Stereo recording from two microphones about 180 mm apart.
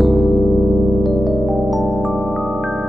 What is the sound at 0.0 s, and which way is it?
Electric piano, centre (ahead or behind).